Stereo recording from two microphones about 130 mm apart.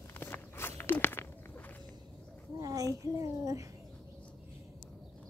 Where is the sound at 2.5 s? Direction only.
25° right (ahead or behind).